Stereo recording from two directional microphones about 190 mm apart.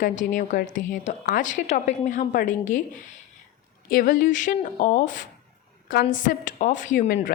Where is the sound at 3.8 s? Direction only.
45° left (ahead or behind).